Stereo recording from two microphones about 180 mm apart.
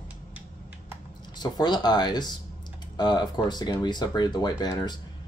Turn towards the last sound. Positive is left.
turn(degrees=25)  # may be behind; listen again after turning